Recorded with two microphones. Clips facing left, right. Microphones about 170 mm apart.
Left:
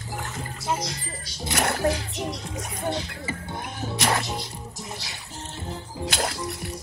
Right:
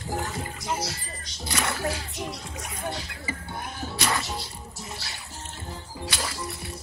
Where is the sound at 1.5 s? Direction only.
65° left (ahead or behind).